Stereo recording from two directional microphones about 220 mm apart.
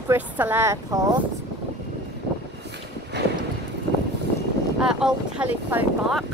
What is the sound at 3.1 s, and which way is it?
Clip-clop, 50° right (ahead or behind).